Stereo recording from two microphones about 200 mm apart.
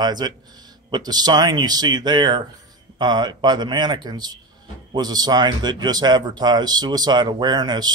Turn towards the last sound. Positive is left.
turn(degrees=-20)  # may be behind; listen again after turning